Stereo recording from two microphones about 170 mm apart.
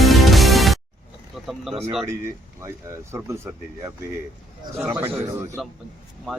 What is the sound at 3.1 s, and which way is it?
Speech, 15° right (ahead or behind).